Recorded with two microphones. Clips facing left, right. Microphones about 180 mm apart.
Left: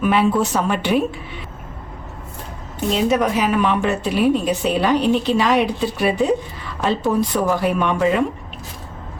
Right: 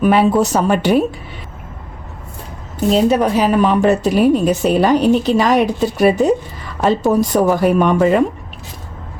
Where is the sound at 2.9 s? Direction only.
35° right (ahead or behind).